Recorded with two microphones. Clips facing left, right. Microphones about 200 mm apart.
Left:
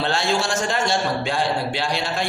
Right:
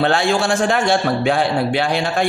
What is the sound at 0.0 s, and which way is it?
A man's voice, 55° right (ahead or behind).